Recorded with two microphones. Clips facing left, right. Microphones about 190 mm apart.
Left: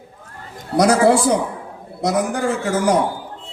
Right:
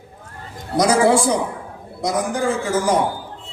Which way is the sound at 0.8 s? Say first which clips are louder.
Left 1 dB; 65° left (ahead or behind).